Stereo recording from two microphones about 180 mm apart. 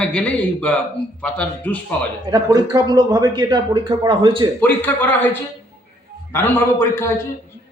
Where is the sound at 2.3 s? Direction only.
20° right (ahead or behind).